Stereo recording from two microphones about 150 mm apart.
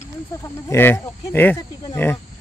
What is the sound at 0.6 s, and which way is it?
Speech, 15° left (ahead or behind).